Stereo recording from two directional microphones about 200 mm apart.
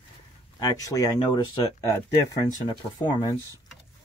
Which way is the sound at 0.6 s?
20° left (ahead or behind).